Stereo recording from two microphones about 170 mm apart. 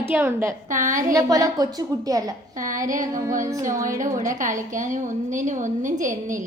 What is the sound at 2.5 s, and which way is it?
A woman's voice, 50° right (ahead or behind).